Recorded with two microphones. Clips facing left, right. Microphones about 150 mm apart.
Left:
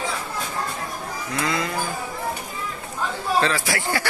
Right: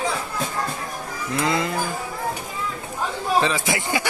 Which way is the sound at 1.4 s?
25° right (ahead or behind).